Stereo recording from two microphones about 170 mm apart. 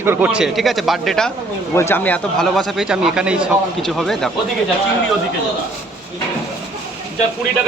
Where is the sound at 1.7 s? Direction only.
15° left (ahead or behind).